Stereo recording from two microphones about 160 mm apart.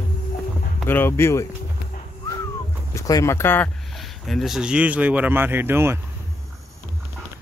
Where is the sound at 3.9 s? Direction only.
Centre (ahead or behind); by 6.0 s 15° right (ahead or behind).